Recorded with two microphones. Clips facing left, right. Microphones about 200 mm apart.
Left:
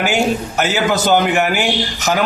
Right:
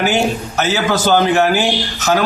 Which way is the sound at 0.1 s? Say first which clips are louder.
Even; 15° left (ahead or behind).